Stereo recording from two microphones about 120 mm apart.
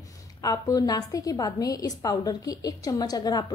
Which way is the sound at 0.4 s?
30° left (ahead or behind).